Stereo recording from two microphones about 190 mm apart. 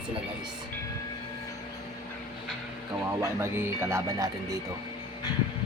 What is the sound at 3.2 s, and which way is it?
Speech, 15° right (ahead or behind).